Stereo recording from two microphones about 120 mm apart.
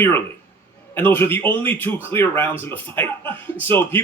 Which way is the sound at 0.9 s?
15° left (ahead or behind).